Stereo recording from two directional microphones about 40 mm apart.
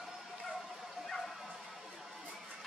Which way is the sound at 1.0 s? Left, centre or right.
Centre.